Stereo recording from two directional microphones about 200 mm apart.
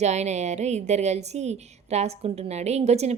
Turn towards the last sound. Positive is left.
turn(degrees=-35)  # may be behind; listen again after turning